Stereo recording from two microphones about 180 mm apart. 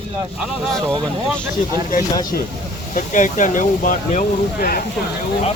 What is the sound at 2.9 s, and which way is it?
Speech, 45° left (ahead or behind).